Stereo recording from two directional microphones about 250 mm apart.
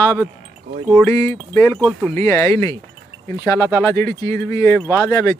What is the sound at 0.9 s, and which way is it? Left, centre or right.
Speech, centre.